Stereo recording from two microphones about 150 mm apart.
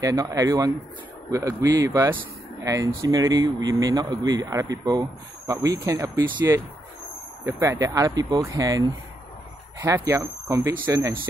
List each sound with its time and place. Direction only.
0.0 s speech: 25° right (ahead or behind)